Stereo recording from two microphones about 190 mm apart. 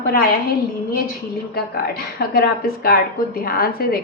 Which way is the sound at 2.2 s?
55° left (ahead or behind).